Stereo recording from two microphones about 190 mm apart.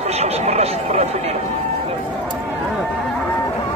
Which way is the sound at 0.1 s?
35° right (ahead or behind).